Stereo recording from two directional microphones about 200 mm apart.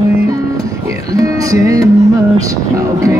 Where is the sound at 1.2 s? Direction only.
15° right (ahead or behind).